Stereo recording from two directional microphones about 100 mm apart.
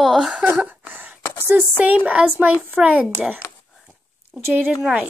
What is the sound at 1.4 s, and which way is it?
Speech, 15° right (ahead or behind).